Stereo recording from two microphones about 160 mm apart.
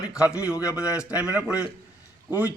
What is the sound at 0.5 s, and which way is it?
Speech, 20° left (ahead or behind).